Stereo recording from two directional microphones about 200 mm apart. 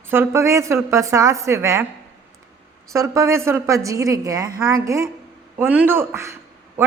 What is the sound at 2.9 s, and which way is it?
A woman's voice, 15° right (ahead or behind).